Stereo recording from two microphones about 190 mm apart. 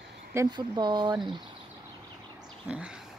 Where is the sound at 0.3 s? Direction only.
20° right (ahead or behind).